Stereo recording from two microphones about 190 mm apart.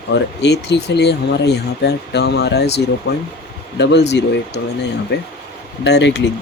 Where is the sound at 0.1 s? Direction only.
65° left (ahead or behind).